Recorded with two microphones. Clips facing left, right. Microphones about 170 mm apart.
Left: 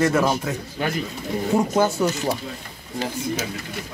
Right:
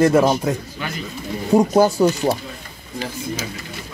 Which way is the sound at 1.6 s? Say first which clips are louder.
Right 6 dB; 35° right (ahead or behind).